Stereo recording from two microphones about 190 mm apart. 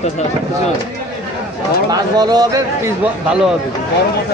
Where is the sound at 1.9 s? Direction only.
20° right (ahead or behind).